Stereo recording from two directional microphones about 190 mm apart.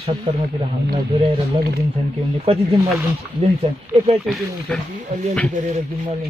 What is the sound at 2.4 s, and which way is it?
Speech, 30° right (ahead or behind).